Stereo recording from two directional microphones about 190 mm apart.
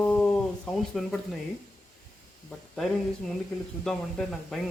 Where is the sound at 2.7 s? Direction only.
5° left (ahead or behind).